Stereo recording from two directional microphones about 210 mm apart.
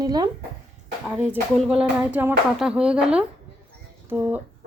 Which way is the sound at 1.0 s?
10° right (ahead or behind).